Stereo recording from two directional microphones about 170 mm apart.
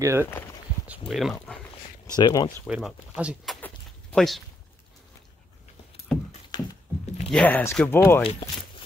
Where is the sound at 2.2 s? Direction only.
20° left (ahead or behind).